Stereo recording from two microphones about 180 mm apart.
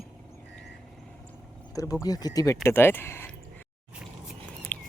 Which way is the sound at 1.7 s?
20° left (ahead or behind).